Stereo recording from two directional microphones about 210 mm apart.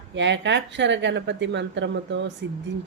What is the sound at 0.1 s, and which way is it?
Speech, 60° right (ahead or behind).